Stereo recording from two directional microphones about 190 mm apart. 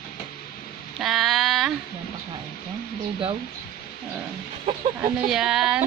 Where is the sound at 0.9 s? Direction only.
Centre (ahead or behind).